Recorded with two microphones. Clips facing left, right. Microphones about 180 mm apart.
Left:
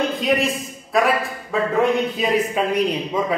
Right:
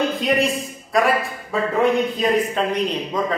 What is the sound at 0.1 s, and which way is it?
A man's voice, centre (ahead or behind).